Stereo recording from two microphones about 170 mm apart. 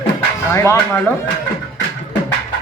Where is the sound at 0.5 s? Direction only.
15° left (ahead or behind).